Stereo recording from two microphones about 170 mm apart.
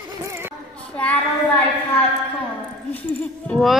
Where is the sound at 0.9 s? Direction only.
10° left (ahead or behind).